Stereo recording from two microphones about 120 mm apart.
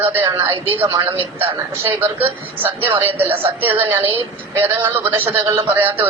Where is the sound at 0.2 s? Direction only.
35° right (ahead or behind).